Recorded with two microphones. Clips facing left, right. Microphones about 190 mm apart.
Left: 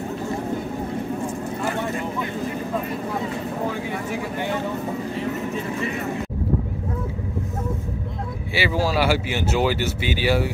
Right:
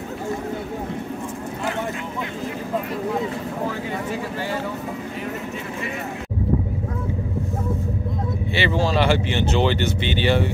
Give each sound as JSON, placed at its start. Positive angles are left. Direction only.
{"t": 8.5, "sound": "speech", "side_deg": 5}